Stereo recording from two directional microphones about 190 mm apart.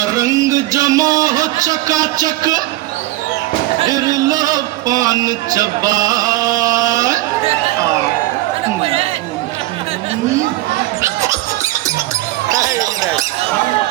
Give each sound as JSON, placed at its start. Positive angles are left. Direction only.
{"t": 0.0, "sound": "a man's voice", "side_deg": -20}
{"t": 3.8, "sound": "a man's voice", "side_deg": -20}
{"t": 8.8, "sound": "chatter", "side_deg": -30}
{"t": 11.0, "sound": "a sound", "side_deg": -15}